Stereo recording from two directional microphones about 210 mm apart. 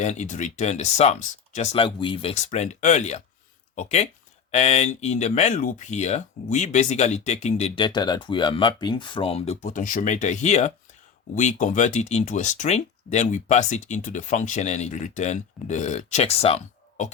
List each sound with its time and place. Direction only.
0.0 s speech: 35° left (ahead or behind)